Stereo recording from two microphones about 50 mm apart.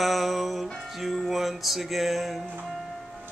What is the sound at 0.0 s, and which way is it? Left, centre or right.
Music, centre.